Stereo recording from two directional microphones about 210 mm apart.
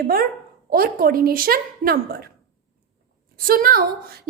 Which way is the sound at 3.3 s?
45° right (ahead or behind).